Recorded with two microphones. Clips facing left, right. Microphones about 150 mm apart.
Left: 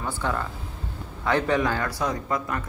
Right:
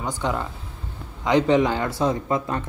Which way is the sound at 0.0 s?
15° right (ahead or behind).